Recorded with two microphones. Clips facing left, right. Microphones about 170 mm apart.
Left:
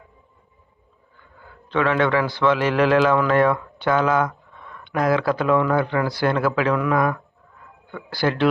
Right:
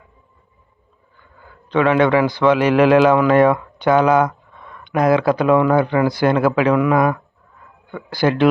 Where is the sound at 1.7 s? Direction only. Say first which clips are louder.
Right 5 dB; 15° right (ahead or behind).